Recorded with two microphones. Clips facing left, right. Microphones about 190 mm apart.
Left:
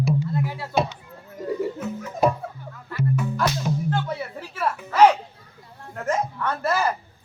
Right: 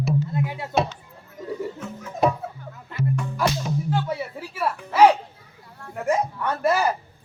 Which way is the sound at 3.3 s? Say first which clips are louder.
Even; 10° right (ahead or behind).